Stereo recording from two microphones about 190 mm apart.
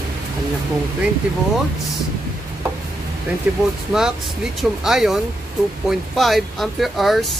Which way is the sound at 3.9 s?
10° right (ahead or behind).